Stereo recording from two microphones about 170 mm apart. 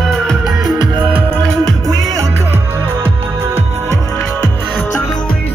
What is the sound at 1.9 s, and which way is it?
Music, 20° right (ahead or behind).